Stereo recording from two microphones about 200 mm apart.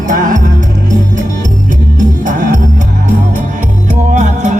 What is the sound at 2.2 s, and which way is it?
Music, 40° right (ahead or behind).